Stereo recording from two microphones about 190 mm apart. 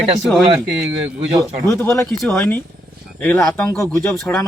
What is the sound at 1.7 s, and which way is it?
A man's voice, 15° left (ahead or behind).